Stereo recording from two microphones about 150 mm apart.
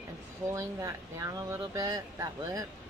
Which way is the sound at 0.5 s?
20° right (ahead or behind).